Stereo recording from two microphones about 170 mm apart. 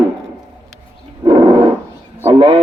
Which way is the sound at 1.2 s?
30° right (ahead or behind).